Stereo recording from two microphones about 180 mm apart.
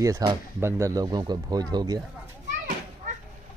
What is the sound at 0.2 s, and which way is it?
Speech, 20° right (ahead or behind).